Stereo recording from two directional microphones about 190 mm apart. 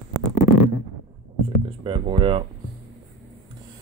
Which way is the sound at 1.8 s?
30° right (ahead or behind).